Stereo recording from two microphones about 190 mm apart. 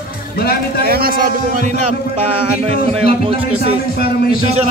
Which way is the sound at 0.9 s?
50° right (ahead or behind).